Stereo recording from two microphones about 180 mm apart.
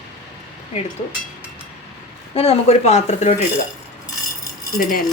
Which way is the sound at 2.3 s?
35° left (ahead or behind).